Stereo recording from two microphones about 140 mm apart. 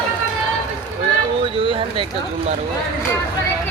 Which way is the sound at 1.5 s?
40° right (ahead or behind).